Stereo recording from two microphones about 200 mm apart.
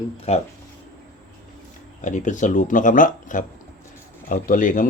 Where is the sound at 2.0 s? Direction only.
40° left (ahead or behind).